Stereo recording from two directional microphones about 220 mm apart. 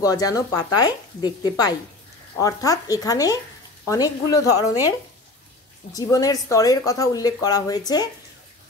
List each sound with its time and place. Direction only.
0.0 s speech: 15° left (ahead or behind)
5.9 s speech: 15° left (ahead or behind)